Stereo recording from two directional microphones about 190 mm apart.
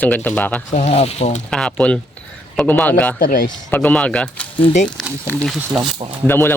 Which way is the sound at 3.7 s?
10° left (ahead or behind).